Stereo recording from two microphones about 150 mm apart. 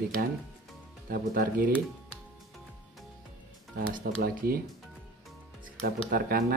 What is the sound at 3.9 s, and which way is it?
Speech, 85° right.